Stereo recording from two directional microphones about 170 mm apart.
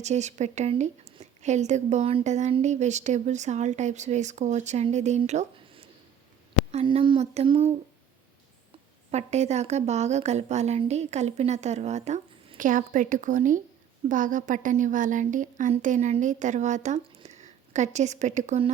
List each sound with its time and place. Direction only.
0.0 s a woman's voice: 40° right (ahead or behind)
9.1 s a woman's voice: 40° right (ahead or behind)